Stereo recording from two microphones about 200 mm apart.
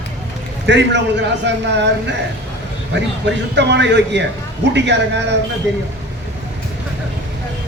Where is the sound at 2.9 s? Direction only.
60° right (ahead or behind).